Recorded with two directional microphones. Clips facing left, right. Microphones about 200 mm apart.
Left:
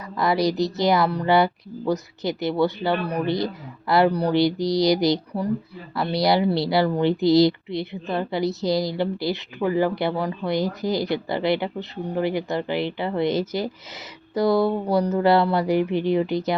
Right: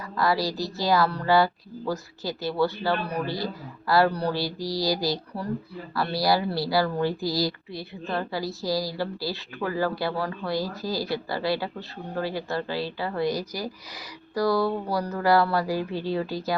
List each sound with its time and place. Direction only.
0.2 s speech: 20° left (ahead or behind)